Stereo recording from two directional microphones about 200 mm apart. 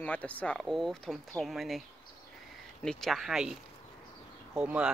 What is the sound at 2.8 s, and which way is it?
Speech, centre (ahead or behind).